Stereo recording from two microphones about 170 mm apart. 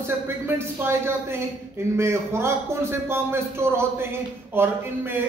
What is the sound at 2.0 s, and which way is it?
A man's voice, 15° right (ahead or behind).